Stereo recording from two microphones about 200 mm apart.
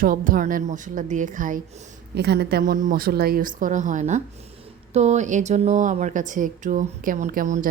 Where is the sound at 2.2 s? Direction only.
55° right (ahead or behind).